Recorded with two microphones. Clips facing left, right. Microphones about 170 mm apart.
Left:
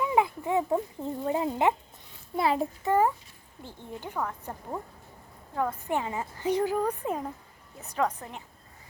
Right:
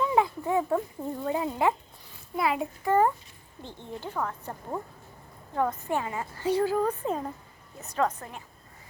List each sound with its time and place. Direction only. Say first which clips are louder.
0.0 s a sound: right 1 dB; 15° left (ahead or behind)
1.2 s a child's voice: left 1 dB; 25° left (ahead or behind)
3.6 s a woman's voice: right 1 dB; 10° left (ahead or behind)
5.5 s a woman's voice: right 2 dB; centre (ahead or behind)
5.9 s a woman's voice: even; 20° left (ahead or behind)